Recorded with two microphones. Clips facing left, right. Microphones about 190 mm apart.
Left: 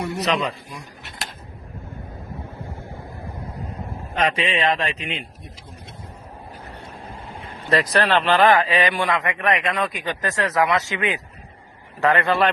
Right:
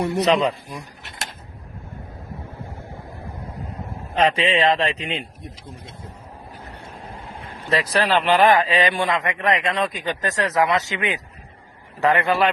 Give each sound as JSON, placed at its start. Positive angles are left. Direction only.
{"t": 0.0, "sound": "speech", "side_deg": -35}
{"t": 4.1, "sound": "speech", "side_deg": -30}
{"t": 7.7, "sound": "a man's voice", "side_deg": -5}